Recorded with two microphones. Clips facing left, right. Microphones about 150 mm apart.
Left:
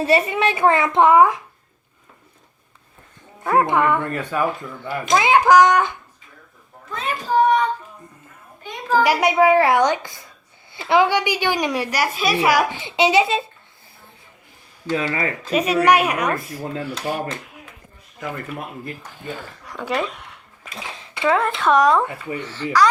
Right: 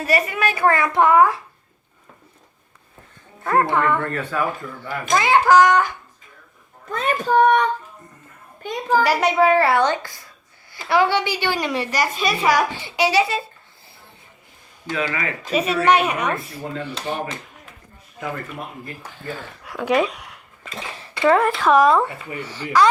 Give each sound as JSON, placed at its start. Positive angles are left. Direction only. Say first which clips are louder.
{"t": 0.0, "sound": "a child's voice", "louder": "left 3 dB", "side_deg": 25}
{"t": 3.4, "sound": "a woman's voice", "louder": "left 1 dB", "side_deg": 10}
{"t": 6.9, "sound": "a child's voice", "louder": "right 2 dB", "side_deg": -55}
{"t": 9.0, "sound": "a woman's voice", "louder": "left 2 dB", "side_deg": 10}
{"t": 12.8, "sound": "a child's voice", "louder": "left 2 dB", "side_deg": 20}
{"t": 14.9, "sound": "speech", "louder": "left 2 dB", "side_deg": 30}
{"t": 15.5, "sound": "a woman's voice", "louder": "left 1 dB", "side_deg": 10}
{"t": 19.2, "sound": "a woman's voice", "louder": "even", "side_deg": 20}
{"t": 19.6, "sound": "speech", "louder": "right 5 dB", "side_deg": -10}
{"t": 22.4, "sound": "speech", "louder": "right 1 dB", "side_deg": -10}